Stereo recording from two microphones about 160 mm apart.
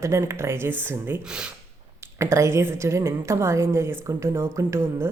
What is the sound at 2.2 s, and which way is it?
A woman's voice, 20° right (ahead or behind).